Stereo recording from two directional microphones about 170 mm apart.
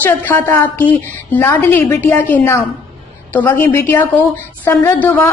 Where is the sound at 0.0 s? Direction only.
10° left (ahead or behind).